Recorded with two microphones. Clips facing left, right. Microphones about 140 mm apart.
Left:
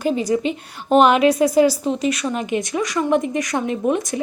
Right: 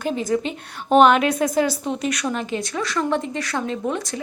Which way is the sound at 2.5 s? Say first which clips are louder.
Left 4 dB; 15° left (ahead or behind).